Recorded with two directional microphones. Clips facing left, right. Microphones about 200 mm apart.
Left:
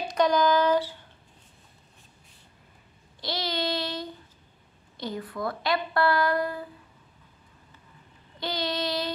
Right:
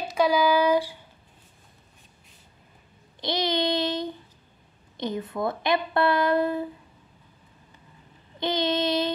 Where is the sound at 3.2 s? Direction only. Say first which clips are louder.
Right 5 dB; 20° right (ahead or behind).